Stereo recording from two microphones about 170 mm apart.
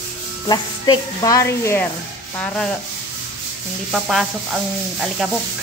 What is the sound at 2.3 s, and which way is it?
Sanding, 5° left (ahead or behind).